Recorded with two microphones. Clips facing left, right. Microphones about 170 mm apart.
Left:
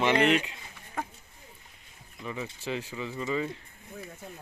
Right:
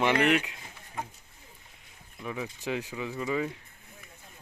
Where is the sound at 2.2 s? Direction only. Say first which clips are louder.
Right 1 dB; 5° right (ahead or behind).